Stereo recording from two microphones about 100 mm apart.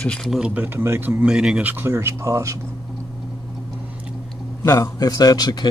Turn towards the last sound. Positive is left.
turn(degrees=40)  # may be behind; listen again after turning